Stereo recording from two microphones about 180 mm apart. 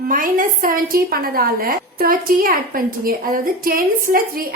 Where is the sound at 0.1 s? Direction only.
50° right (ahead or behind).